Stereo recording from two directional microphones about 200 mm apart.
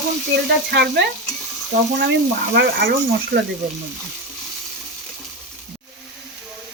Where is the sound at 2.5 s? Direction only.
50° right (ahead or behind).